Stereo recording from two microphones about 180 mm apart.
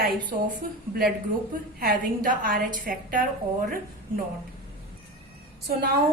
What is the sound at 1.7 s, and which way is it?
A woman's voice, 55° right (ahead or behind).